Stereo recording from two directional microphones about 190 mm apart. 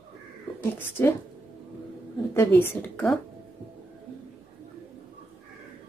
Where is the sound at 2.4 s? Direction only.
10° left (ahead or behind).